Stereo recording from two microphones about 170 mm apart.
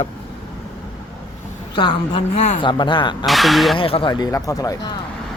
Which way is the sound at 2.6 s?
30° left (ahead or behind).